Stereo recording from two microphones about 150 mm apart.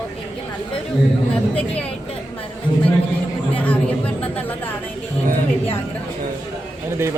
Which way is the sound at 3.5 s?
10° left (ahead or behind).